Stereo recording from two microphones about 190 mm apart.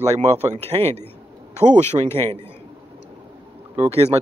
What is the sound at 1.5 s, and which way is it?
Speech, 35° right (ahead or behind).